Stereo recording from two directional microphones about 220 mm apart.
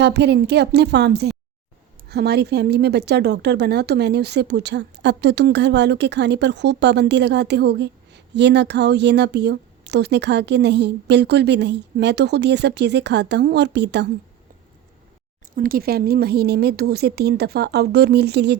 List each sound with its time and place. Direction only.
0.0 s speech: 50° right (ahead or behind)
15.5 s speech: 40° right (ahead or behind)